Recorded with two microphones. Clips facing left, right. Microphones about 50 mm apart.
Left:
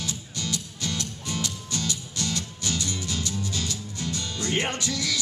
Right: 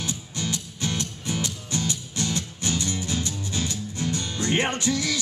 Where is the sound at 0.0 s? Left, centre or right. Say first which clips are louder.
Right 2 dB; right.